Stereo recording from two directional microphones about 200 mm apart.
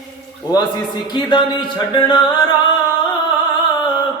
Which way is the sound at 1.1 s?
20° left (ahead or behind).